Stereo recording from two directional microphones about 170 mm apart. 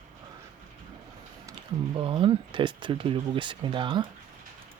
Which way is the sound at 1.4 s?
25° right (ahead or behind).